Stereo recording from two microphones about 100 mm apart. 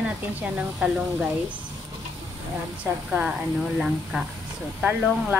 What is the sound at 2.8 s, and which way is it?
Speech, 15° right (ahead or behind).